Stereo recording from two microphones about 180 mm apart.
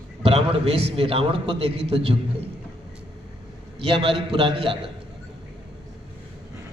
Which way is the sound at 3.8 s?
30° right (ahead or behind).